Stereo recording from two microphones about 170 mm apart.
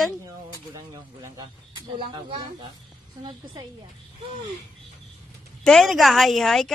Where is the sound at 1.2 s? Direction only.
20° right (ahead or behind).